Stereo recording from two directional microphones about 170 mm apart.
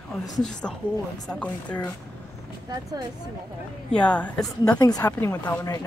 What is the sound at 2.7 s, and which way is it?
Speech, 25° right (ahead or behind).